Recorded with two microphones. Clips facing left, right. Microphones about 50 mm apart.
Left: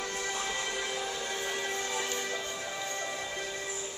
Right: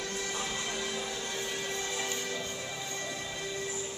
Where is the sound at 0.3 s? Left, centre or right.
Left.